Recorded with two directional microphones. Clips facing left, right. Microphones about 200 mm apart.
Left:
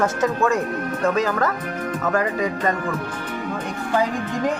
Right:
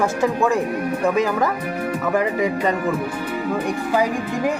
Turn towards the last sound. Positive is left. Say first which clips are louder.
# right 2 dB
turn(degrees=-10)  # may be behind; listen again after turning